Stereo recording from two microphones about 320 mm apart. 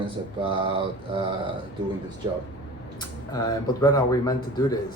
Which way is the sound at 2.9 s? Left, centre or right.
Centre.